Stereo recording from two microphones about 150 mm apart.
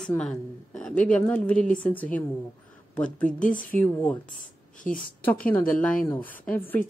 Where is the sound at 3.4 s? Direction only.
60° left (ahead or behind).